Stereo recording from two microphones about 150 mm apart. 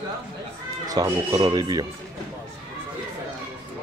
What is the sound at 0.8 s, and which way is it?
Speech, 25° right (ahead or behind).